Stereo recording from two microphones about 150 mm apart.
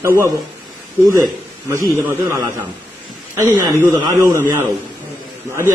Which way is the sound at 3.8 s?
20° right (ahead or behind).